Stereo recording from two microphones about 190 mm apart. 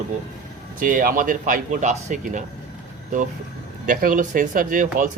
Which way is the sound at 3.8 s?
45° right (ahead or behind).